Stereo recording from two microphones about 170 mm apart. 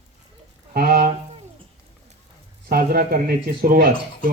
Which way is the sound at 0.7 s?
65° right (ahead or behind).